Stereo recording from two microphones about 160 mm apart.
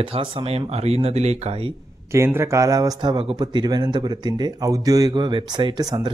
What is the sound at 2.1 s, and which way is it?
Speech, 15° right (ahead or behind).